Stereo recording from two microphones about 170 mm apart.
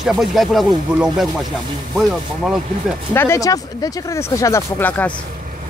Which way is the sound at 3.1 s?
15° left (ahead or behind).